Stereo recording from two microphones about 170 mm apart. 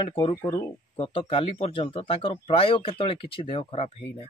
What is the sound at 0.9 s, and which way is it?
Speech, 35° left (ahead or behind).